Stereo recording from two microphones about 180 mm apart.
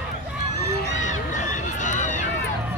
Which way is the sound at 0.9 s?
45° left (ahead or behind).